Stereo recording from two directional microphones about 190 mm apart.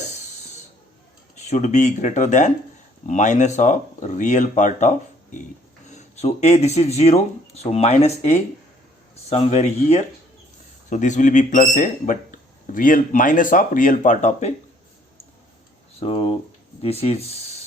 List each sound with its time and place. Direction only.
1.4 s speech: 40° left (ahead or behind)
5.9 s speech: 35° left (ahead or behind)
16.0 s speech: 30° left (ahead or behind)